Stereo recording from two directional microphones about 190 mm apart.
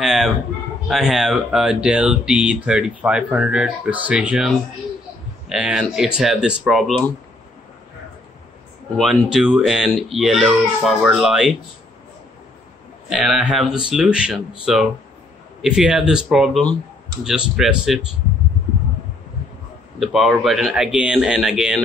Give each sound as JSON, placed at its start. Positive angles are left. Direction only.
{"t": 0.0, "sound": "speech", "side_deg": 0}
{"t": 5.5, "sound": "speech", "side_deg": -5}
{"t": 8.9, "sound": "speech", "side_deg": 0}
{"t": 13.1, "sound": "speech", "side_deg": 0}
{"t": 20.0, "sound": "speech", "side_deg": 0}